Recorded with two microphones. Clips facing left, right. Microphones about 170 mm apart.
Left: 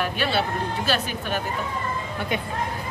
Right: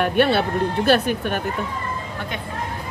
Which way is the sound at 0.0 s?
60° right (ahead or behind).